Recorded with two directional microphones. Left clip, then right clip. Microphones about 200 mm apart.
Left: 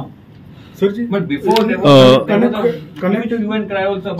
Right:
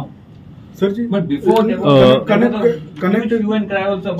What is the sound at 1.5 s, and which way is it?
Speech, 25° left (ahead or behind).